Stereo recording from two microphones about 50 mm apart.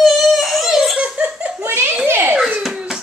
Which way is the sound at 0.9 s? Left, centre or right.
Right.